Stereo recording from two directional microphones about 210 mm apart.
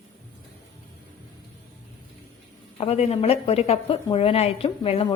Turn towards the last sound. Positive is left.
turn(degrees=25)  # may be behind; listen again after turning